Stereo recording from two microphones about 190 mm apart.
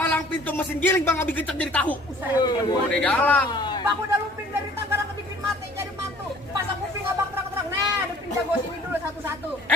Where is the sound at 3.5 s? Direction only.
20° left (ahead or behind).